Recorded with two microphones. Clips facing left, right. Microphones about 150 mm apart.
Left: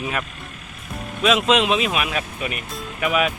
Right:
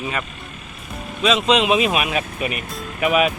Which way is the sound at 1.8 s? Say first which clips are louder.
Right 3 dB; 15° right (ahead or behind).